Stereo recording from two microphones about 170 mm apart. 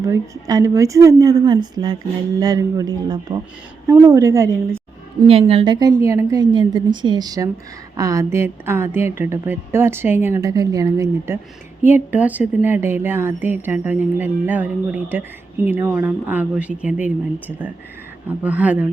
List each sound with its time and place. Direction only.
0.0 s a woman's voice: 20° right (ahead or behind)
5.3 s a woman's voice: 35° right (ahead or behind); by 18.9 s 10° right (ahead or behind)